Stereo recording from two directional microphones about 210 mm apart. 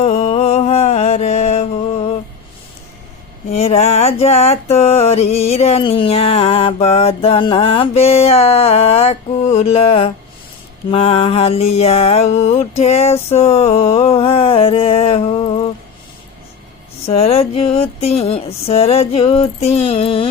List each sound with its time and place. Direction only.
0.0 s music: 30° left (ahead or behind)
3.5 s music: 30° left (ahead or behind)
17.1 s music: 30° left (ahead or behind)